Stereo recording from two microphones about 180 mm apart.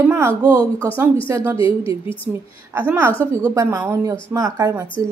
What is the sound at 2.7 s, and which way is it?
A woman's voice, 10° right (ahead or behind).